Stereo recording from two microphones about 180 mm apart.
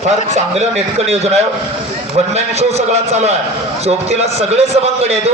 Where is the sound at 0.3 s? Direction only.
35° right (ahead or behind).